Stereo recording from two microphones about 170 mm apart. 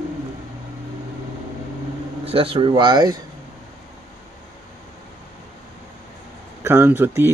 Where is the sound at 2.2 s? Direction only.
30° right (ahead or behind).